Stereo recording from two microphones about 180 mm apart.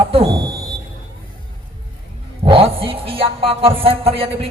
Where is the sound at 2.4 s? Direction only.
30° right (ahead or behind).